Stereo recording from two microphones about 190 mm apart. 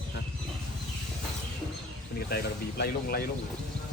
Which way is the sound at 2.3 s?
55° left (ahead or behind).